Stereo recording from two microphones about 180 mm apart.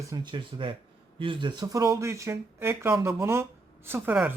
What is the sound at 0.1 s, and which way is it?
Speech, 25° right (ahead or behind).